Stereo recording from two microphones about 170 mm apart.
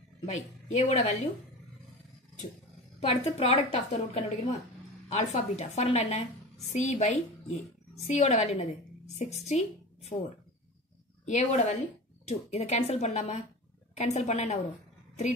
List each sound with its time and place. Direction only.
0.2 s a woman's voice: 45° left (ahead or behind)
3.0 s a woman's voice: 35° left (ahead or behind)
11.2 s a woman's voice: 45° left (ahead or behind)